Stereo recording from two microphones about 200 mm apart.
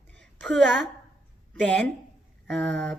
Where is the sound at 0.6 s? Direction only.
60° right (ahead or behind).